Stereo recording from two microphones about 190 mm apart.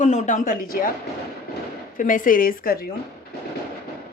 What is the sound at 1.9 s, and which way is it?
Speech, 45° left (ahead or behind).